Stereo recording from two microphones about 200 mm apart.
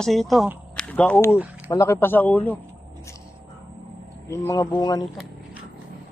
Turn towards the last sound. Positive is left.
turn(degrees=20)  # may be behind; listen again after turning